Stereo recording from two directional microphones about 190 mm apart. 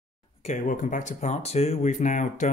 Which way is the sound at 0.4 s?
40° left (ahead or behind).